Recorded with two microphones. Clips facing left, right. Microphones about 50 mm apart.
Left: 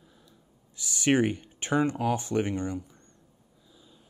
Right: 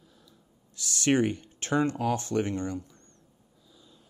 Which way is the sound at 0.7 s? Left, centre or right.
Centre.